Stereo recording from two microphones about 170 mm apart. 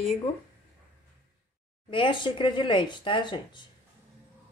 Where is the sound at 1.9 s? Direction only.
30° left (ahead or behind).